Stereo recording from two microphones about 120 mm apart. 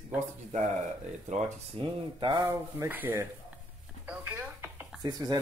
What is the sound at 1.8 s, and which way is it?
Speech, 40° right (ahead or behind).